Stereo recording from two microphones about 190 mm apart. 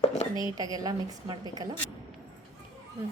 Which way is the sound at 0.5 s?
20° right (ahead or behind).